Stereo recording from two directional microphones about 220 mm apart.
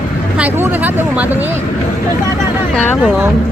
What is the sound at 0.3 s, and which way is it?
Speech, 10° right (ahead or behind).